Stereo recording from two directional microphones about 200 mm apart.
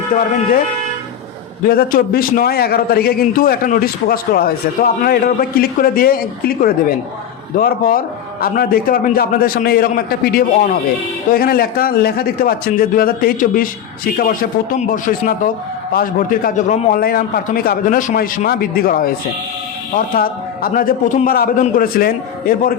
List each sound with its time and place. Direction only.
1.6 s a man's voice: 45° left (ahead or behind)
20.1 s a man's voice: 45° left (ahead or behind)